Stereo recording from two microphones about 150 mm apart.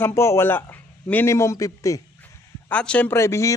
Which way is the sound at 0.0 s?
20° left (ahead or behind).